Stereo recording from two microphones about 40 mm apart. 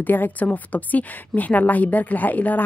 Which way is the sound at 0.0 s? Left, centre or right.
Left.